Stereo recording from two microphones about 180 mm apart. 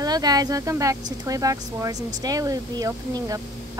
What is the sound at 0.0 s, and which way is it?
Speech, 20° right (ahead or behind).